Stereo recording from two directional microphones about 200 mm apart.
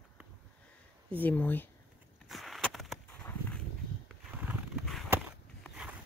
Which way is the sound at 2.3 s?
Centre (ahead or behind).